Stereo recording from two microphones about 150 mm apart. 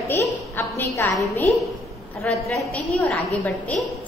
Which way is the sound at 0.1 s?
15° left (ahead or behind).